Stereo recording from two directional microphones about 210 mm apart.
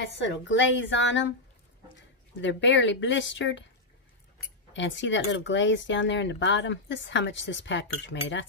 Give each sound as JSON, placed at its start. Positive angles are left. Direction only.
{"t": 0.0, "sound": "speech", "side_deg": 60}
{"t": 2.4, "sound": "speech", "side_deg": 60}
{"t": 4.7, "sound": "speech", "side_deg": 60}